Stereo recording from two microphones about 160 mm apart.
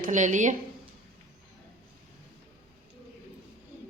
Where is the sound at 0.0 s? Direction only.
50° right (ahead or behind).